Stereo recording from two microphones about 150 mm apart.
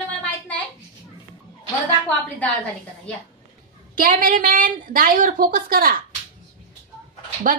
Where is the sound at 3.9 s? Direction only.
65° right (ahead or behind).